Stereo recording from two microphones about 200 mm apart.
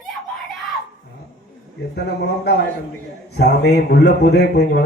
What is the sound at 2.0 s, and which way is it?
A man's voice, 55° left (ahead or behind).